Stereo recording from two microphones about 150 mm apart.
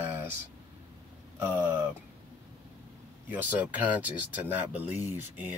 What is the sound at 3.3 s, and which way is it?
Speech, 10° right (ahead or behind).